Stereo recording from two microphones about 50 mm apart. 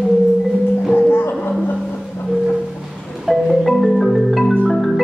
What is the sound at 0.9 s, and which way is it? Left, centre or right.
Music, left.